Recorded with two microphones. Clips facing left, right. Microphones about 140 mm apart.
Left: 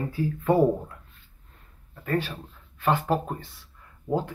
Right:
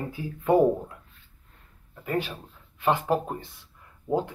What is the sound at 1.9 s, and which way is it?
Speech, 15° right (ahead or behind).